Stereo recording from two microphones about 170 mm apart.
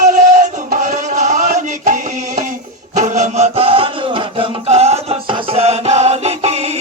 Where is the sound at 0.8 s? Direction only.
45° right (ahead or behind).